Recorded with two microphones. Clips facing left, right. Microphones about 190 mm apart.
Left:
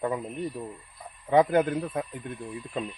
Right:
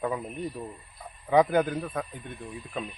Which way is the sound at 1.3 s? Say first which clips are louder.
Left 1 dB; centre (ahead or behind).